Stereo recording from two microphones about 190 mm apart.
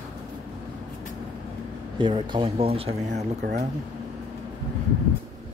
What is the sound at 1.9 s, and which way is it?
Speech, 25° right (ahead or behind).